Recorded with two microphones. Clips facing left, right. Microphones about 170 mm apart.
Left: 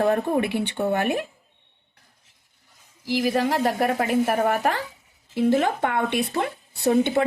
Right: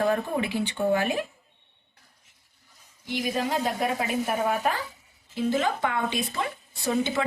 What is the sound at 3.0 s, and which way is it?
A woman's voice, 70° left (ahead or behind).